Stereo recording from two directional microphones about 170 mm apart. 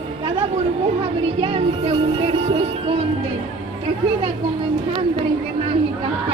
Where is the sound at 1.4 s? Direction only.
35° right (ahead or behind).